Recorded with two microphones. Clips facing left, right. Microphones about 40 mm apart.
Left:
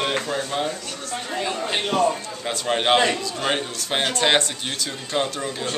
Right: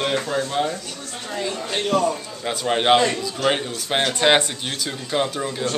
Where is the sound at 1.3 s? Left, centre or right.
Centre.